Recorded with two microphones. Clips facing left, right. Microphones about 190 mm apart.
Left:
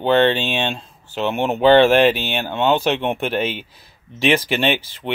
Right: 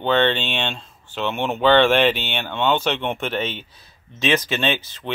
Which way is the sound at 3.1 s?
10° left (ahead or behind).